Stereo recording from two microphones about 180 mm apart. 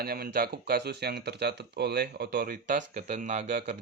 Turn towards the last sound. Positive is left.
turn(degrees=-40)  # may be behind; listen again after turning